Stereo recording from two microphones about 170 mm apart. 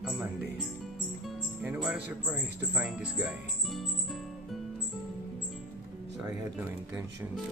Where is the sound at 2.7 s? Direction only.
5° right (ahead or behind).